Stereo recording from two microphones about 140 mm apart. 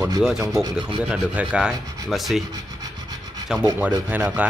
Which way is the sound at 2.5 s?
30° right (ahead or behind).